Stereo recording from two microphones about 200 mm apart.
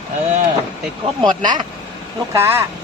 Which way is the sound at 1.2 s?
20° right (ahead or behind).